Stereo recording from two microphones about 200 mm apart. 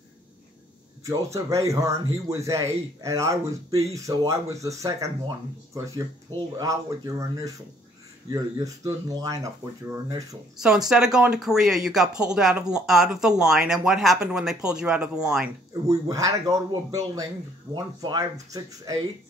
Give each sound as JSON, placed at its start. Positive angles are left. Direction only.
{"t": 1.0, "sound": "speech", "side_deg": -15}
{"t": 10.9, "sound": "speech", "side_deg": -5}
{"t": 16.1, "sound": "speech", "side_deg": -15}